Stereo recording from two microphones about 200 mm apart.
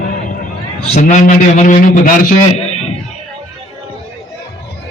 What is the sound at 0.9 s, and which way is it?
A man's voice, 40° left (ahead or behind).